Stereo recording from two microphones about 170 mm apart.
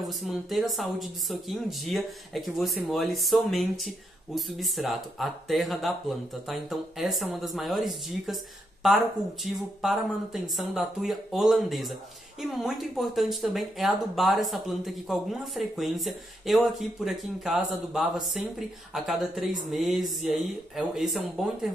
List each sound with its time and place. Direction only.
0.0 s speech: centre (ahead or behind)